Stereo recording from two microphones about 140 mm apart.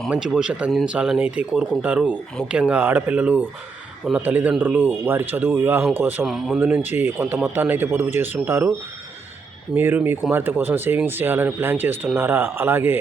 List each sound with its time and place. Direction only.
0.1 s speech: 5° right (ahead or behind)
6.2 s speech: centre (ahead or behind); by 8.7 s 15° right (ahead or behind)
9.7 s speech: 15° right (ahead or behind)